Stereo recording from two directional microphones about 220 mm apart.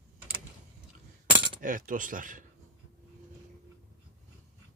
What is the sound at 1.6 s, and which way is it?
Speech, 40° right (ahead or behind).